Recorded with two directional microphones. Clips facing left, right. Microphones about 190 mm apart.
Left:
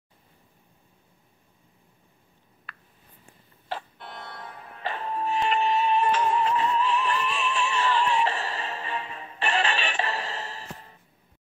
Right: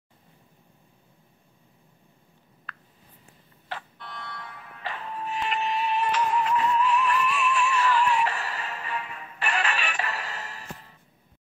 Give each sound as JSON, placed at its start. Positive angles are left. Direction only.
{"t": 4.0, "sound": "music", "side_deg": 50}